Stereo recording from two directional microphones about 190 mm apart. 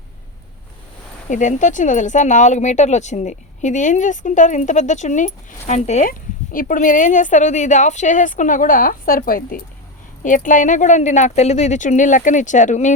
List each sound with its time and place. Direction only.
1.3 s speech: 40° left (ahead or behind)